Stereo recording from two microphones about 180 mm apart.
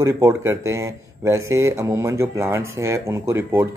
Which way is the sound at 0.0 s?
15° right (ahead or behind).